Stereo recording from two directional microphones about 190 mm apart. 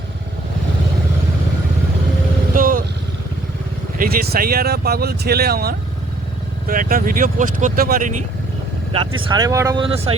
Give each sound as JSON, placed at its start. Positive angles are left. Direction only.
{"t": 2.6, "sound": "vehicle", "side_deg": -45}
{"t": 3.9, "sound": "speech", "side_deg": -50}
{"t": 9.2, "sound": "speech", "side_deg": -20}